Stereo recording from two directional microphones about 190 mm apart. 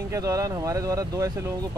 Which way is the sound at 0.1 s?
20° right (ahead or behind).